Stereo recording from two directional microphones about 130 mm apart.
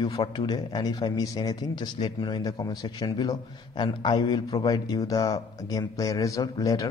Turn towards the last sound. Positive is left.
turn(degrees=25)  # may be behind; listen again after turning